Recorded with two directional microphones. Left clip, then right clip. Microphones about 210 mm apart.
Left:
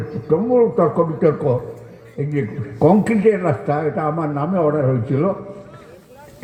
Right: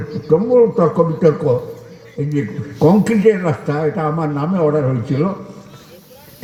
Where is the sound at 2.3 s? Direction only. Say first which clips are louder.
Right 1 dB; 40° right (ahead or behind).